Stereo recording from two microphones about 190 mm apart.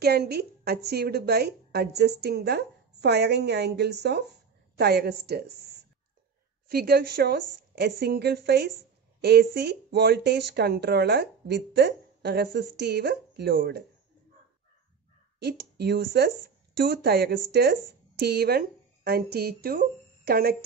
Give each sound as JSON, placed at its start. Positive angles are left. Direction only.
{"t": 0.0, "sound": "a woman's voice", "side_deg": -60}
{"t": 15.3, "sound": "speech", "side_deg": -60}